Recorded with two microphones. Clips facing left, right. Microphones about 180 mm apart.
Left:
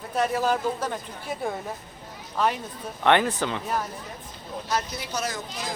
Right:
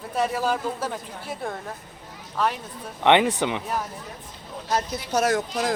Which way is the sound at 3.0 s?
20° right (ahead or behind).